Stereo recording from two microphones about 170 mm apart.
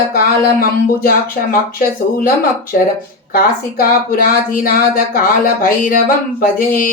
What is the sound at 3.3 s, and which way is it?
Speech, 60° left (ahead or behind).